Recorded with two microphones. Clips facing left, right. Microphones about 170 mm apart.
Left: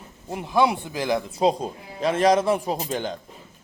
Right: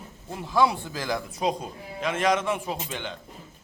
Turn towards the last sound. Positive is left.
turn(degrees=40)  # may be behind; listen again after turning